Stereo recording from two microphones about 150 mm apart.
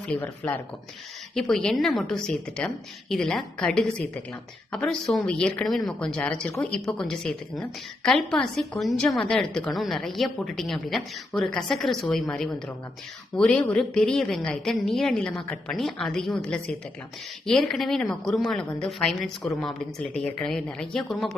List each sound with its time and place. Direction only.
0.1 s a woman's voice: 15° left (ahead or behind)